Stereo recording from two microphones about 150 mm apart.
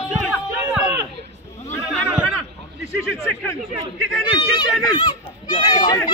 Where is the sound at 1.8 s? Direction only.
5° right (ahead or behind).